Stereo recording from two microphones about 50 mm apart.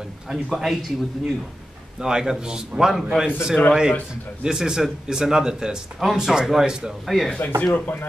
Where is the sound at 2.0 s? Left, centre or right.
Centre.